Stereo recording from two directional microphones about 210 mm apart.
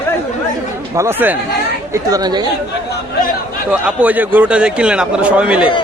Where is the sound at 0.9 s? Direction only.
10° right (ahead or behind).